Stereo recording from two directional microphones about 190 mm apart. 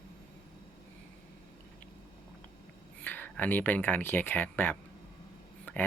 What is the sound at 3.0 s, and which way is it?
Speech, 10° left (ahead or behind).